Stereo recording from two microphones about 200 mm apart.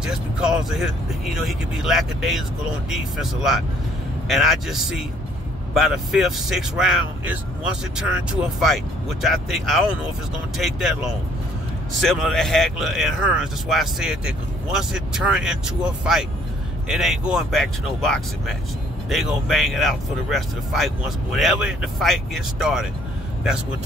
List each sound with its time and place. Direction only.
0.0 s speech: 5° right (ahead or behind)
12.0 s speech: centre (ahead or behind)